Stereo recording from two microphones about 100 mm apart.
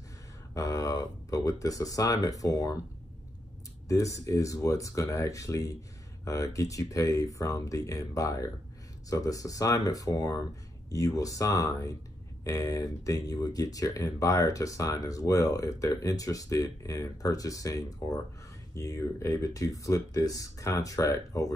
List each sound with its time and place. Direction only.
0.6 s speech: 35° left (ahead or behind)
3.9 s speech: 35° left (ahead or behind)